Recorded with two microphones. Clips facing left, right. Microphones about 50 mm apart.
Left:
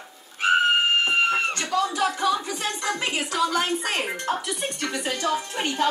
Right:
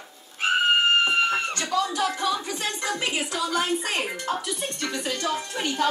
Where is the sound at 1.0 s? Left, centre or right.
Centre.